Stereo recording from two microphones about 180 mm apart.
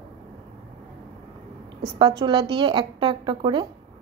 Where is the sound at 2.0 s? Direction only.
25° right (ahead or behind).